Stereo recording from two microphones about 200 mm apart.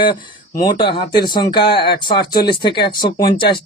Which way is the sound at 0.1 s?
45° left (ahead or behind).